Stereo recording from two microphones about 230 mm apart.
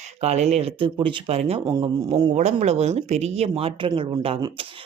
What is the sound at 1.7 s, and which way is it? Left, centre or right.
Speech, centre.